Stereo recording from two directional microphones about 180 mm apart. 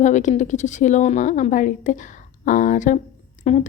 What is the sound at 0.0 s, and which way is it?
A woman's voice, 45° left (ahead or behind).